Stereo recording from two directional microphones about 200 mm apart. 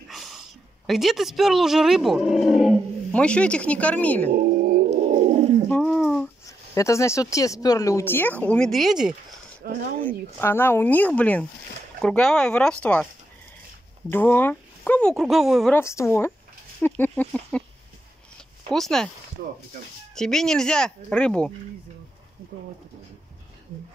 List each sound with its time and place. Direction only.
0.1 s a sound: centre (ahead or behind)
0.8 s speech: centre (ahead or behind)
4.4 s a sound: 45° right (ahead or behind)
5.3 s roaring cats: 30° right (ahead or behind)
5.7 s a sound: centre (ahead or behind)
6.4 s speech: 15° left (ahead or behind); by 9.1 s centre (ahead or behind)
9.6 s speech: 50° right (ahead or behind)
10.0 s speech: 10° left (ahead or behind)
14.1 s speech: 10° left (ahead or behind)
15.7 s speech: 15° left (ahead or behind)
18.7 s speech: centre (ahead or behind)
20.2 s speech: centre (ahead or behind)